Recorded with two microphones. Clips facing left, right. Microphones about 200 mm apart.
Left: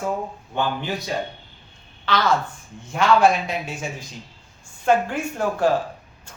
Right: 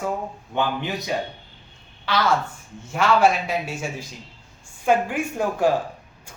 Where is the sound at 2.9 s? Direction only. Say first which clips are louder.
Left 1 dB; 5° right (ahead or behind).